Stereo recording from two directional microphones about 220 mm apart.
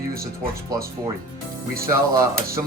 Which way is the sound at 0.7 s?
15° right (ahead or behind).